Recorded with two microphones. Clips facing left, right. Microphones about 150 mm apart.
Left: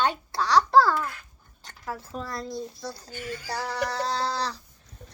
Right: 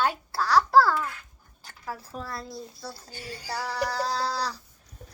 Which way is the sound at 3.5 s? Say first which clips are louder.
Even; 5° right (ahead or behind).